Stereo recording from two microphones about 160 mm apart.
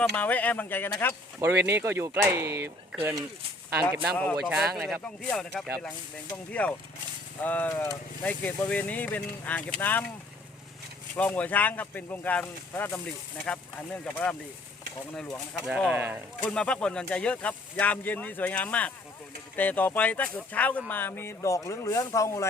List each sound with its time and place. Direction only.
0.0 s speech: 10° left (ahead or behind)
1.4 s speech: 15° right (ahead or behind)
4.1 s speech: 5° left (ahead or behind)
11.2 s speech: 10° left (ahead or behind)
14.0 s speech: 5° left (ahead or behind)
15.5 s speech: centre (ahead or behind)
16.4 s speech: 5° left (ahead or behind)